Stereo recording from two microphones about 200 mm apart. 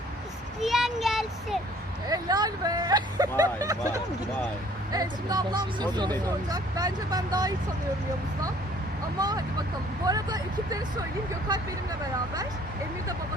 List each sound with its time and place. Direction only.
0.6 s a child's voice: centre (ahead or behind)
2.0 s speech: 20° right (ahead or behind)
4.9 s speech: 20° right (ahead or behind)
9.1 s speech: 20° right (ahead or behind)